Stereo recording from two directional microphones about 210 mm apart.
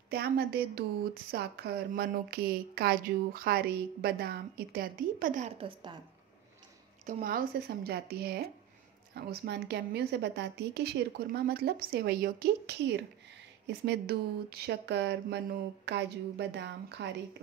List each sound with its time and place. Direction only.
0.1 s speech: 50° right (ahead or behind)
7.1 s speech: 40° right (ahead or behind)